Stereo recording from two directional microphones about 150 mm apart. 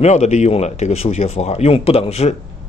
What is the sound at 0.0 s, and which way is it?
A man's voice, 50° left (ahead or behind).